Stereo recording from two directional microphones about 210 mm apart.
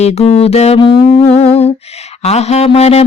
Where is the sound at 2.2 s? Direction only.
30° left (ahead or behind).